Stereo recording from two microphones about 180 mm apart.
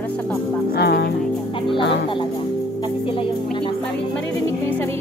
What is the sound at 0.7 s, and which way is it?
Music, 70° left (ahead or behind).